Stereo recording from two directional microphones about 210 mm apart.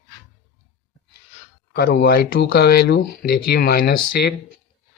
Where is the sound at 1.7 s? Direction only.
45° left (ahead or behind).